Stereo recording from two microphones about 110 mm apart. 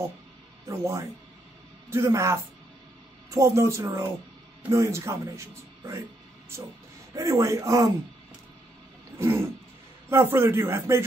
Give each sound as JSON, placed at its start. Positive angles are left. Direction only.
{"t": 0.7, "sound": "speech", "side_deg": -25}
{"t": 7.2, "sound": "speech", "side_deg": -25}
{"t": 10.0, "sound": "speech", "side_deg": -20}